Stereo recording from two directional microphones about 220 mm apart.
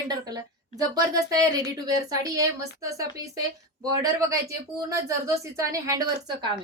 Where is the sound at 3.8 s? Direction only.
15° right (ahead or behind).